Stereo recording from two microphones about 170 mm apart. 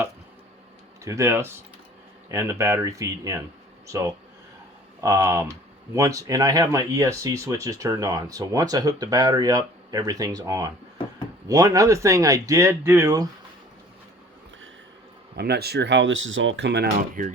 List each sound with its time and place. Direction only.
1.0 s speech: 15° right (ahead or behind)
15.4 s speech: 70° right (ahead or behind)
17.0 s speech: 50° right (ahead or behind)